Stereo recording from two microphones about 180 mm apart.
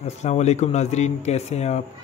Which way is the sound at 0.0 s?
40° left (ahead or behind).